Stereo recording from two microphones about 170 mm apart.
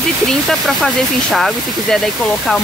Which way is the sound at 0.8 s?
Centre (ahead or behind).